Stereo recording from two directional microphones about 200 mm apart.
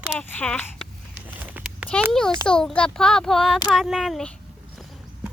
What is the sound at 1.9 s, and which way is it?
Speech, 5° left (ahead or behind).